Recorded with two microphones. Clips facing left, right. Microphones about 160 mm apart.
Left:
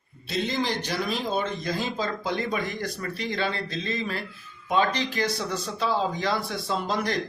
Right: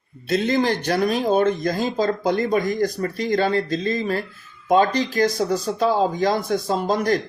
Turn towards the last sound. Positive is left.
turn(degrees=-45)  # may be behind; listen again after turning